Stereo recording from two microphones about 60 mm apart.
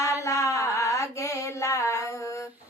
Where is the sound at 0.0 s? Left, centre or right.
Left.